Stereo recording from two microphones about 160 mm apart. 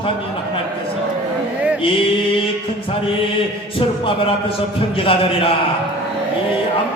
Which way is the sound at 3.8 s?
35° left (ahead or behind).